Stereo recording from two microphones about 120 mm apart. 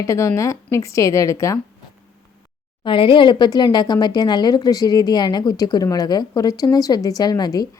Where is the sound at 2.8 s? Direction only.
45° left (ahead or behind).